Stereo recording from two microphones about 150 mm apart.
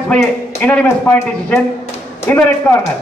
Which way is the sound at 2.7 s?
15° left (ahead or behind).